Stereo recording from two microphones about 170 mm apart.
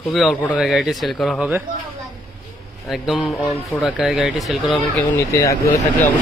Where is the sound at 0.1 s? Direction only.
Centre (ahead or behind).